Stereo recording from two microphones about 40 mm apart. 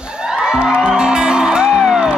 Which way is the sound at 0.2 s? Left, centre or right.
Centre.